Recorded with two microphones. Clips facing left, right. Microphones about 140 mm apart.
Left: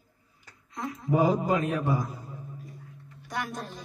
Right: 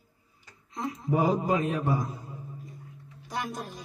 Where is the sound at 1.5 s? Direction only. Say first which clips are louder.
Even; 20° right (ahead or behind).